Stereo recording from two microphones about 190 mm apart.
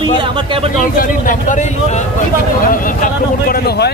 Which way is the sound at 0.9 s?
45° left (ahead or behind).